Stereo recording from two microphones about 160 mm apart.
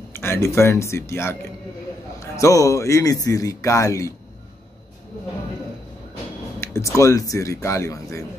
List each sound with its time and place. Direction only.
0.1 s speech: 15° left (ahead or behind)
6.6 s speech: 15° left (ahead or behind)